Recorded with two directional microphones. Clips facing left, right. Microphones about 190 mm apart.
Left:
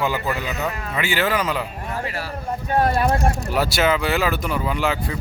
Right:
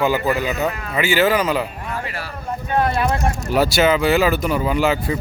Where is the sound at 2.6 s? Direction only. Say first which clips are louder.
Even; 40° left (ahead or behind).